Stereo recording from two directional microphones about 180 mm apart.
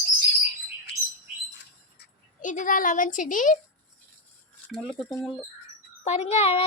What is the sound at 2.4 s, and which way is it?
A woman's voice, 45° left (ahead or behind).